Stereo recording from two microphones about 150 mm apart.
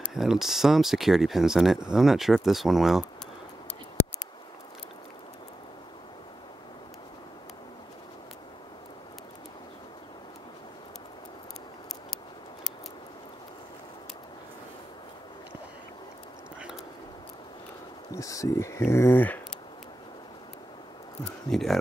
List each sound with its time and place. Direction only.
0.1 s speech: 5° right (ahead or behind)
18.1 s a sound: 20° left (ahead or behind)
21.5 s speech: centre (ahead or behind)